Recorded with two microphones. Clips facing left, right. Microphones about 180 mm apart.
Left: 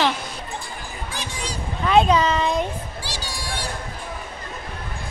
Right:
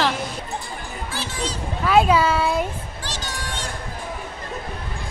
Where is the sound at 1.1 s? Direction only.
15° left (ahead or behind).